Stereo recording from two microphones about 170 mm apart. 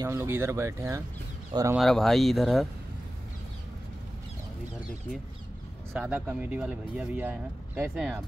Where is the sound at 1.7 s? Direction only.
Centre (ahead or behind).